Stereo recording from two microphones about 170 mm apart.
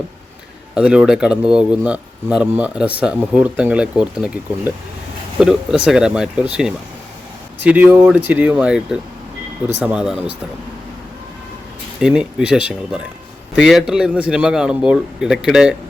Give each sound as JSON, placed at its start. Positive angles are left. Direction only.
{"t": 0.7, "sound": "speech", "side_deg": -5}
{"t": 11.9, "sound": "speech", "side_deg": -5}